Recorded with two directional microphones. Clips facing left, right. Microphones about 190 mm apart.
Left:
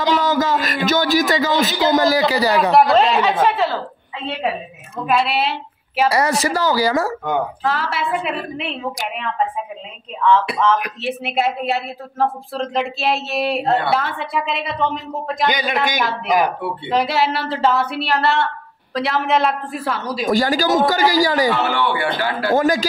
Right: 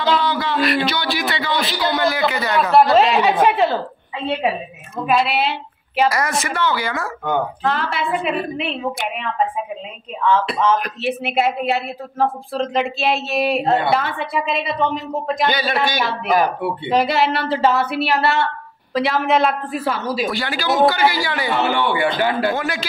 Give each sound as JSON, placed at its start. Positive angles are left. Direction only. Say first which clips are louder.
{"t": 0.1, "sound": "a sound", "louder": "left 2 dB", "side_deg": 45}
{"t": 0.8, "sound": "a man's voice", "louder": "left 6 dB", "side_deg": 45}
{"t": 2.9, "sound": "a woman's voice", "louder": "right 1 dB", "side_deg": -5}
{"t": 5.0, "sound": "a woman's voice", "louder": "even", "side_deg": 0}
{"t": 6.0, "sound": "speech", "louder": "left 5 dB", "side_deg": 30}
{"t": 7.2, "sound": "a woman's voice", "louder": "even", "side_deg": 5}
{"t": 11.0, "sound": "a woman's voice", "louder": "right 1 dB", "side_deg": 0}
{"t": 15.4, "sound": "a man's voice", "louder": "left 1 dB", "side_deg": 15}
{"t": 16.9, "sound": "a woman's voice", "louder": "right 1 dB", "side_deg": 0}
{"t": 20.2, "sound": "speech", "louder": "left 5 dB", "side_deg": 40}
{"t": 21.6, "sound": "a man's voice", "louder": "right 1 dB", "side_deg": -15}
{"t": 22.5, "sound": "speech", "louder": "left 7 dB", "side_deg": 40}